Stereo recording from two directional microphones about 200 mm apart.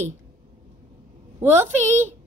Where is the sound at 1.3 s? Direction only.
10° right (ahead or behind).